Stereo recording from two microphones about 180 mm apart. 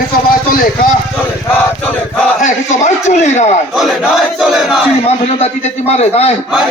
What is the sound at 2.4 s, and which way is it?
A man's voice, 40° left (ahead or behind).